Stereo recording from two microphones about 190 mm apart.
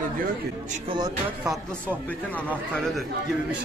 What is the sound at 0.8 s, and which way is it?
Speech, 20° right (ahead or behind).